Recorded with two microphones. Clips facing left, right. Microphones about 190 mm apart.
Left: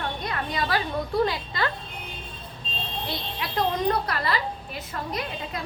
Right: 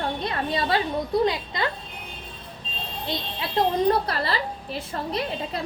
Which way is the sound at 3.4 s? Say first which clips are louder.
Right 3 dB; 30° right (ahead or behind).